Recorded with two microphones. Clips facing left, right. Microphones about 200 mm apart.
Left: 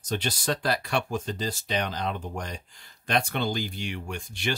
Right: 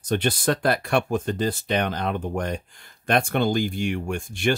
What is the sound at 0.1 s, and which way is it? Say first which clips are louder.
Speech: right 6 dB; 55° right (ahead or behind).